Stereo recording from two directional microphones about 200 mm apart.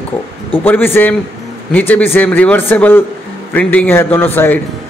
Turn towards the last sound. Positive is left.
turn(degrees=10)  # may be behind; listen again after turning